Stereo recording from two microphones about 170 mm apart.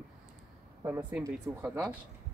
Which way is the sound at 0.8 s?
15° right (ahead or behind).